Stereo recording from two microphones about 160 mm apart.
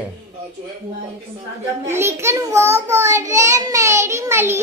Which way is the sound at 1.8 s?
15° right (ahead or behind).